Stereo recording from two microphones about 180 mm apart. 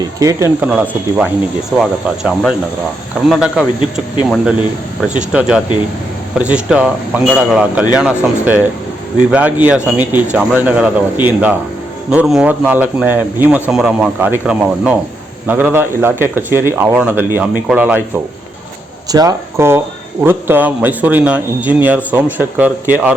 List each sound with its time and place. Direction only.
0.2 s a man's voice: 15° right (ahead or behind)
19.1 s a man's voice: 20° right (ahead or behind)